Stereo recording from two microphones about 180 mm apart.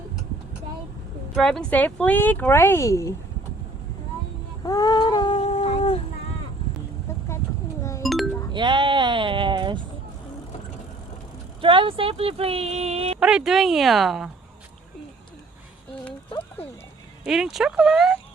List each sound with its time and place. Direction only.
1.4 s speech: 5° left (ahead or behind)
4.6 s humming: 20° left (ahead or behind)
7.1 s vehicle: 15° left (ahead or behind)
8.0 s music: centre (ahead or behind)
8.5 s a sound: 25° right (ahead or behind)
11.6 s speech: 30° right (ahead or behind)
13.1 s speech: 5° right (ahead or behind)
16.6 s music: 35° left (ahead or behind)
17.2 s speech: centre (ahead or behind)